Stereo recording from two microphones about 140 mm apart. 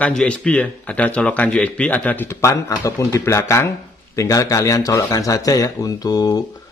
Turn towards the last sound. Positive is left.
turn(degrees=25)  # may be behind; listen again after turning